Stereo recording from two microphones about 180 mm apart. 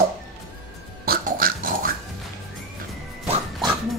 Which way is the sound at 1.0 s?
55° right (ahead or behind).